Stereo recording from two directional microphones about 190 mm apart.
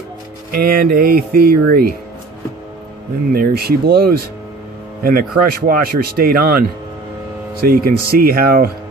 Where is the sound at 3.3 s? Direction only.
55° right (ahead or behind).